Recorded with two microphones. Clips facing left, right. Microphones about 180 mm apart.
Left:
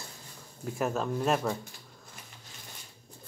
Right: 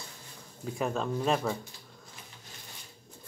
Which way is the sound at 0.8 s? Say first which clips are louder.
Left 1 dB; 5° left (ahead or behind).